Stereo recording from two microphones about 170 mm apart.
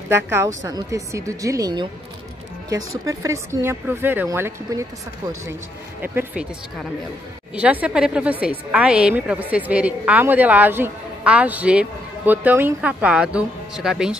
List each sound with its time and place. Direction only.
0.1 s a woman's voice: 15° right (ahead or behind)
3.1 s a woman's voice: 20° right (ahead or behind)
6.0 s a woman's voice: 10° right (ahead or behind)
7.5 s a woman's voice: 10° right (ahead or behind)